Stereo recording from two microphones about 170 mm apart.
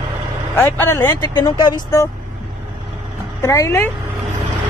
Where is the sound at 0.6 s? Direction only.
15° left (ahead or behind).